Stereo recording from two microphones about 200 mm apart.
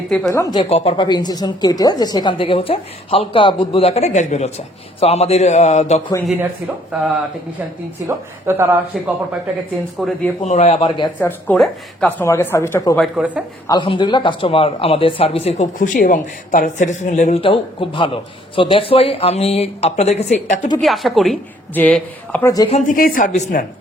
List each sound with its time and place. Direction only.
0.1 s a woman's voice: 10° left (ahead or behind)
0.6 s speech: 30° left (ahead or behind)
8.0 s speech: 10° right (ahead or behind)
10.0 s a woman's voice: centre (ahead or behind)
10.4 s speech: 35° left (ahead or behind)
11.2 s a woman's voice: 10° left (ahead or behind)
13.0 s speech: 5° right (ahead or behind)
13.7 s speech: 25° left (ahead or behind); by 17.4 s 40° left (ahead or behind)
17.4 s speech: 25° left (ahead or behind)
20.7 s a woman's voice: centre (ahead or behind)
22.5 s speech: 20° left (ahead or behind)
22.9 s speech: 45° left (ahead or behind)